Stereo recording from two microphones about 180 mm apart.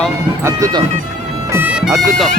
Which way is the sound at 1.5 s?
10° right (ahead or behind).